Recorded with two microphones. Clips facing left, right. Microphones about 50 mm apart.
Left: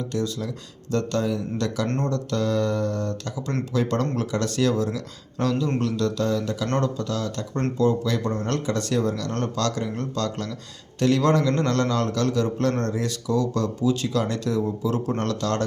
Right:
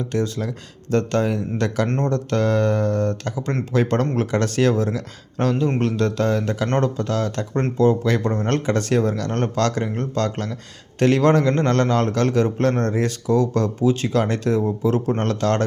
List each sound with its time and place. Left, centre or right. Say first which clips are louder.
0.1 s a man's voice: right 4 dB; right